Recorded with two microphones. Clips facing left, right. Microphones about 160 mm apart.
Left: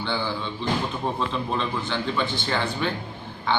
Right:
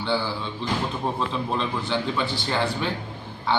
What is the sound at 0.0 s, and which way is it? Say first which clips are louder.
A man's voice: right 2 dB; 5° right (ahead or behind).